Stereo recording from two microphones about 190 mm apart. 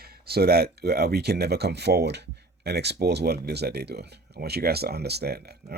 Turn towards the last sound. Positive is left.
turn(degrees=-60)  # may be behind; listen again after turning